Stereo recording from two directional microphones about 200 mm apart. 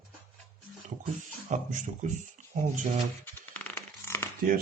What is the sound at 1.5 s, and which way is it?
Speech, 40° right (ahead or behind).